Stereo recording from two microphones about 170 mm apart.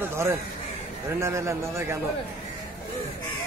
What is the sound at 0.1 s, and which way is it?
A man's voice, 15° right (ahead or behind).